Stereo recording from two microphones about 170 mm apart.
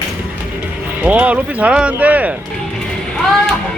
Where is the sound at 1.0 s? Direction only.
10° right (ahead or behind).